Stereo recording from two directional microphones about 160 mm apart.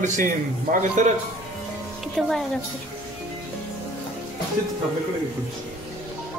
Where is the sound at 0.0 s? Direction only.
55° right (ahead or behind).